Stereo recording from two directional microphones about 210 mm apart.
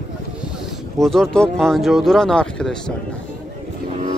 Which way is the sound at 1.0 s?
Centre (ahead or behind).